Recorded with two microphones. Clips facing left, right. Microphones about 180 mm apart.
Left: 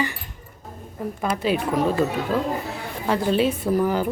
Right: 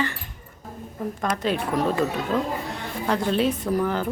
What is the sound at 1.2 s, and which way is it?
A woman's voice, 5° left (ahead or behind).